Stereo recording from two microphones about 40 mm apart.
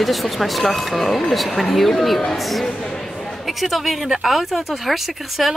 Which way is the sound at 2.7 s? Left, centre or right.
Left.